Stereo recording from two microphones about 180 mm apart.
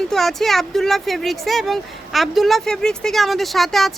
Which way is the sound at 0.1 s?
Centre (ahead or behind).